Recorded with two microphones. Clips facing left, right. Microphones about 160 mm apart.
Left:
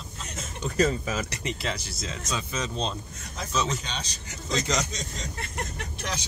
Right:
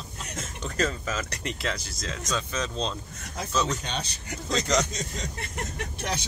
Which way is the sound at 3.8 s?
55° right (ahead or behind).